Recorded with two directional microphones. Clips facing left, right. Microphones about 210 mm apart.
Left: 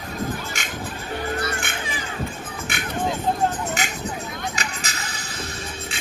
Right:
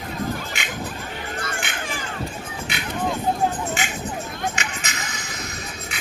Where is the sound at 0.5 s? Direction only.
45° left (ahead or behind).